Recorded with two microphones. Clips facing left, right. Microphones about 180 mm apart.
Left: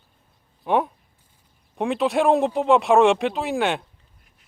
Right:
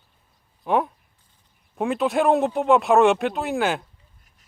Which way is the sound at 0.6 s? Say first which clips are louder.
Left 1 dB; centre (ahead or behind).